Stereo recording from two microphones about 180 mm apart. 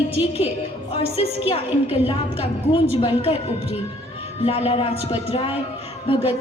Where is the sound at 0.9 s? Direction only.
35° left (ahead or behind).